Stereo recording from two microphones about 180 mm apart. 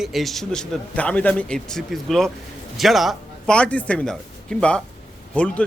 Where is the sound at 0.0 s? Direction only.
Centre (ahead or behind).